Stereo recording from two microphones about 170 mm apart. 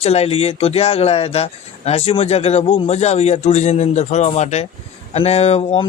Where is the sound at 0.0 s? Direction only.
35° left (ahead or behind).